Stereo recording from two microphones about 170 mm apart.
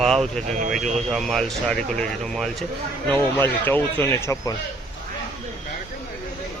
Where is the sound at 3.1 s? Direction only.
15° left (ahead or behind).